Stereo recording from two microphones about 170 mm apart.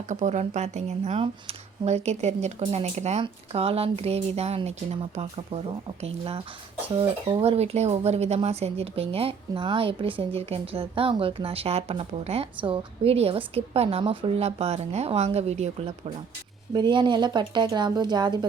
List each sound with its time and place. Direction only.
0.1 s speech: 45° right (ahead or behind)
16.7 s speech: 25° right (ahead or behind)